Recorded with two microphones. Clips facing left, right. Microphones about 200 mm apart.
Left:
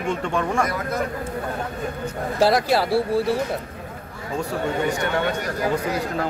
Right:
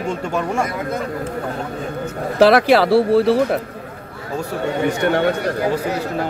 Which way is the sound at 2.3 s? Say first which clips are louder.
Right 7 dB; 70° right (ahead or behind).